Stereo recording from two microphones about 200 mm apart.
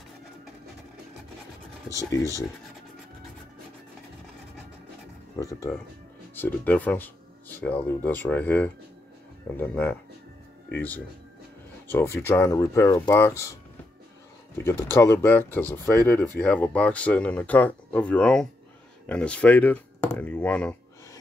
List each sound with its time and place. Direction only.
1.9 s speech: 15° left (ahead or behind)
5.3 s speech: 15° left (ahead or behind)
11.9 s speech: 10° left (ahead or behind)
14.6 s speech: 10° left (ahead or behind)